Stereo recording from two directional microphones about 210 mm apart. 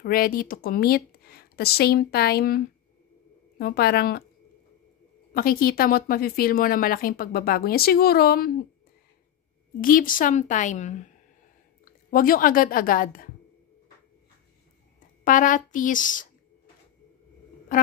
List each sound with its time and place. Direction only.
0.0 s a woman's voice: 45° left (ahead or behind)
5.3 s a woman's voice: 45° left (ahead or behind)
9.8 s a woman's voice: 40° left (ahead or behind)
15.2 s a woman's voice: 40° left (ahead or behind)